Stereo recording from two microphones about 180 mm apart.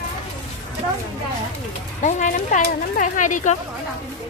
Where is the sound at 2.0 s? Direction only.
45° left (ahead or behind).